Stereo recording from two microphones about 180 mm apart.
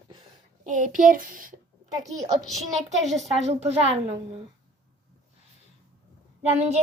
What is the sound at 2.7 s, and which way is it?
A child's voice, 40° right (ahead or behind).